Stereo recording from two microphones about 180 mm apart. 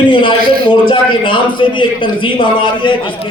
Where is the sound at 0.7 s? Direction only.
30° left (ahead or behind).